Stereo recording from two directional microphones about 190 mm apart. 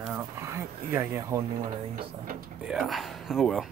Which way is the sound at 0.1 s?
15° right (ahead or behind).